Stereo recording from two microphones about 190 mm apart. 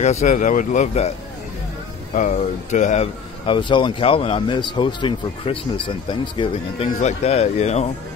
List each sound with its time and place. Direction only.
0.0 s speech: 35° left (ahead or behind)
2.1 s speech: 40° left (ahead or behind)